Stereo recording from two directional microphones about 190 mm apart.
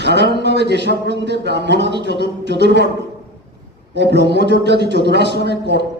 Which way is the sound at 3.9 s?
65° right (ahead or behind).